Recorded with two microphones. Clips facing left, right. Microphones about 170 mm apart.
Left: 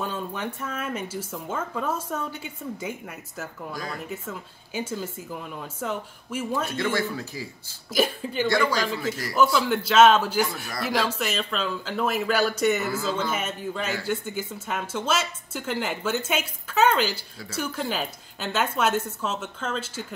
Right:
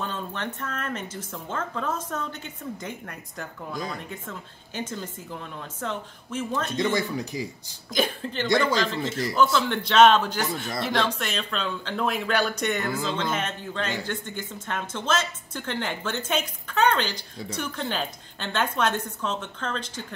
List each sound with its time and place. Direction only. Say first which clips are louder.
0.0 s a woman's voice: left 2 dB; 10° left (ahead or behind)
6.8 s speech: right 1 dB; 15° right (ahead or behind)
7.9 s speech: left 2 dB; 5° left (ahead or behind)
8.5 s speech: right 2 dB; 20° right (ahead or behind)
8.8 s a woman's voice: right 1 dB; 5° left (ahead or behind)